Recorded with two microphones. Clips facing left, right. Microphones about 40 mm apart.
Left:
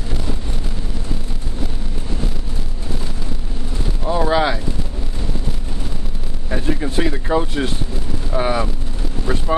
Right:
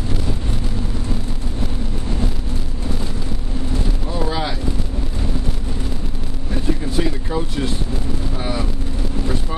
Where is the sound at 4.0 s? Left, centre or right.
Left.